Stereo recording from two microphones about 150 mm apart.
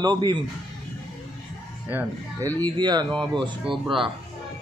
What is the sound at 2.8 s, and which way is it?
Speech, 30° right (ahead or behind).